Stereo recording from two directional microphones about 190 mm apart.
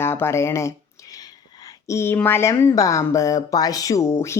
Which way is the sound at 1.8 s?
15° left (ahead or behind).